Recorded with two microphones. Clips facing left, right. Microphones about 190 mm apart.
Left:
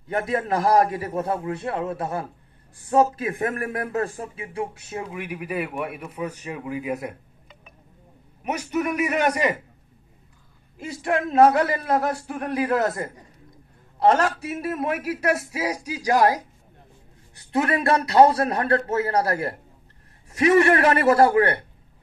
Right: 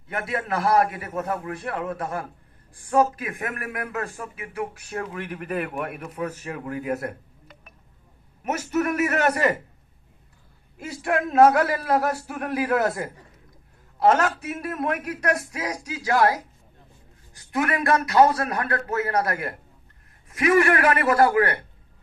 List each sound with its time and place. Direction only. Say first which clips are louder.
0.3 s a man's voice: left 2 dB; 35° left (ahead or behind); by 7.2 s 5° left (ahead or behind)
8.5 s speech: right 1 dB; 15° left (ahead or behind)
10.8 s a man's voice: even; centre (ahead or behind)
13.9 s a sound: left 1 dB; centre (ahead or behind)
14.6 s speech: left 1 dB; 5° left (ahead or behind)
17.4 s a man's voice: left 2 dB; 30° left (ahead or behind)